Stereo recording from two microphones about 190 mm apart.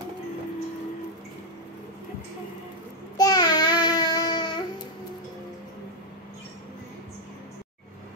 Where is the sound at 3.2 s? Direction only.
20° left (ahead or behind).